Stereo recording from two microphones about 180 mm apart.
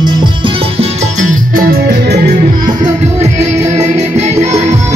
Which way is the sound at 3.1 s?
40° right (ahead or behind).